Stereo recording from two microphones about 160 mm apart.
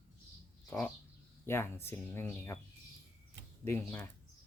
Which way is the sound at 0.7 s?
10° left (ahead or behind).